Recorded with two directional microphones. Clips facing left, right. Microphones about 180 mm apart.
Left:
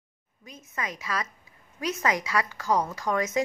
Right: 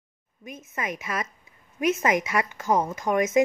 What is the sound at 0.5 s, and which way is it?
A woman's voice, 20° right (ahead or behind).